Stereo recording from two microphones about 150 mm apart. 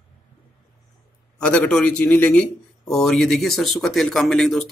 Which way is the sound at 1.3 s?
5° left (ahead or behind).